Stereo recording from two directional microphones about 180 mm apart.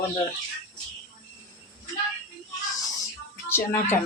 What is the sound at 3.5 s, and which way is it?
Speech, 15° left (ahead or behind).